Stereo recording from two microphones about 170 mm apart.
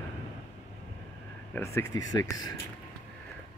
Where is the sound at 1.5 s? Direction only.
15° left (ahead or behind).